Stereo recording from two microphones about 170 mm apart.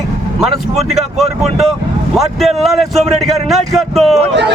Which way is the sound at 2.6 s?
Centre (ahead or behind).